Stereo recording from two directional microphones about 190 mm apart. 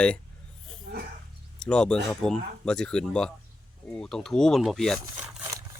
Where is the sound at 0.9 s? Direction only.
65° right (ahead or behind).